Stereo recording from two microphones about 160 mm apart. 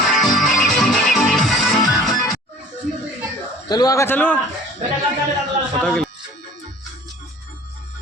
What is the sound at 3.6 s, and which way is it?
Speech, 25° left (ahead or behind).